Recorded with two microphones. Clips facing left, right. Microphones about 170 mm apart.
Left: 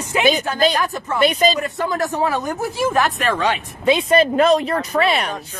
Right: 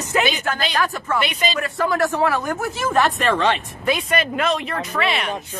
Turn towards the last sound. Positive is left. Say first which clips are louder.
# left 4 dB
turn(degrees=40)  # may be behind; listen again after turning